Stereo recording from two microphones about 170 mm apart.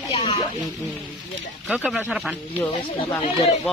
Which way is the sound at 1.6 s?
5° right (ahead or behind).